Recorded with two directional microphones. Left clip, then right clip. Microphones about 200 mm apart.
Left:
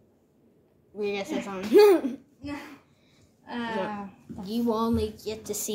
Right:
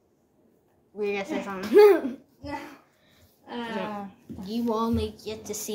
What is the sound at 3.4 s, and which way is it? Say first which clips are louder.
Speech: left 1 dB; 50° left (ahead or behind).